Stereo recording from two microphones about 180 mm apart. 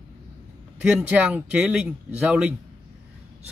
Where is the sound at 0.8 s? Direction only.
5° right (ahead or behind).